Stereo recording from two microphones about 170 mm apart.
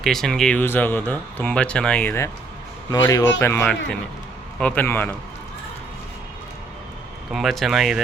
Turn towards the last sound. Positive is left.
turn(degrees=0)  # may be behind; listen again after turning